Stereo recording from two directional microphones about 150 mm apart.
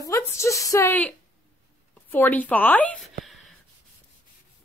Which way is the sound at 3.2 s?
Centre (ahead or behind).